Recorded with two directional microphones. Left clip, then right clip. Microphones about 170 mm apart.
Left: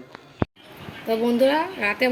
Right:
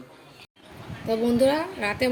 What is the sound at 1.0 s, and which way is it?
A woman's voice, 5° right (ahead or behind).